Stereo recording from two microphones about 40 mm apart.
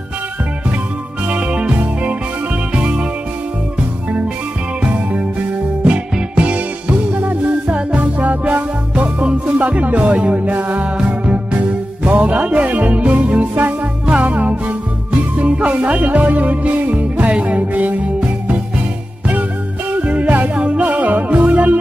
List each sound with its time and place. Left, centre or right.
1.3 s music: right
6.3 s music: right
19.9 s music: right